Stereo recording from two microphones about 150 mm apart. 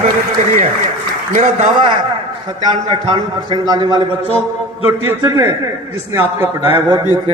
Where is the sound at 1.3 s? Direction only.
50° right (ahead or behind).